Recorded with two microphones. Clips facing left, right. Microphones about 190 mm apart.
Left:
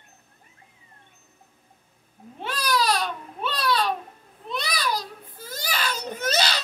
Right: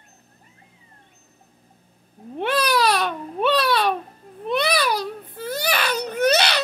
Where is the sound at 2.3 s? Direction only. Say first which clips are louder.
Right 5 dB; 65° right (ahead or behind).